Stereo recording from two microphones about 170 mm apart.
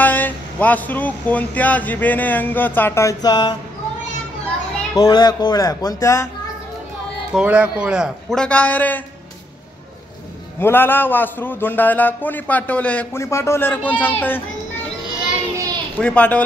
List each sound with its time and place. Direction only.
0.0 s a man's voice: 10° left (ahead or behind)
4.9 s speech: 25° left (ahead or behind)
7.3 s a man's voice: 10° right (ahead or behind); by 9.0 s 10° left (ahead or behind)
10.6 s a man's voice: 10° left (ahead or behind)
16.0 s a man's voice: 5° left (ahead or behind)